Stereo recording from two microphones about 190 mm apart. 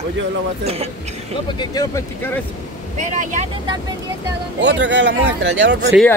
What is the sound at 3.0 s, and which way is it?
Speech, 40° right (ahead or behind).